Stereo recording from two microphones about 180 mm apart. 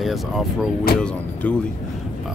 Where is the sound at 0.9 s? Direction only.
55° left (ahead or behind).